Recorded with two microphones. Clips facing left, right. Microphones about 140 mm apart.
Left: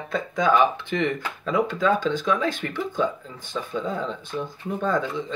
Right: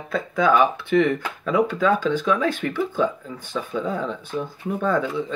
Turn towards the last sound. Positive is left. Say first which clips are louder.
# right 2 dB
turn(degrees=-10)  # may be behind; listen again after turning